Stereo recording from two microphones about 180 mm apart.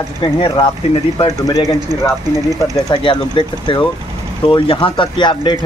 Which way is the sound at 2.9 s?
25° left (ahead or behind).